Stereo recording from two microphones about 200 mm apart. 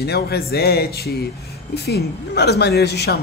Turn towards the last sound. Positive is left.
turn(degrees=55)  # may be behind; listen again after turning